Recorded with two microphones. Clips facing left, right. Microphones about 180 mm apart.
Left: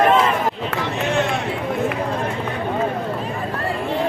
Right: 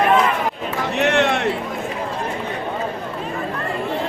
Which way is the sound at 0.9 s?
70° right (ahead or behind).